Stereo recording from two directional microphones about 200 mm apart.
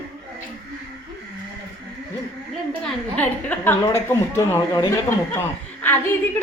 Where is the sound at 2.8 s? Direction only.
5° left (ahead or behind).